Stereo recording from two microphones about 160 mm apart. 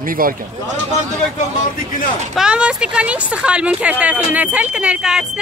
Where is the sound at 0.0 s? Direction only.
60° right (ahead or behind).